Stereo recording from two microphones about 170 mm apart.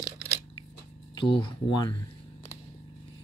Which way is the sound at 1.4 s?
25° left (ahead or behind).